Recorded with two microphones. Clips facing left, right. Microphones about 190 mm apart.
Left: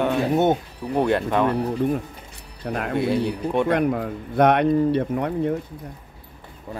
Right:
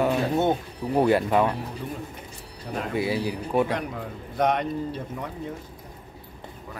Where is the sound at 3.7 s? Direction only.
60° left (ahead or behind).